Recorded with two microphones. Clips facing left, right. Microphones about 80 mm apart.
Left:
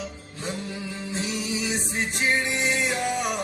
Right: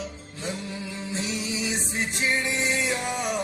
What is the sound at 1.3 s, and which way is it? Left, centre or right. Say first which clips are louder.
Music: left 2 dB; right.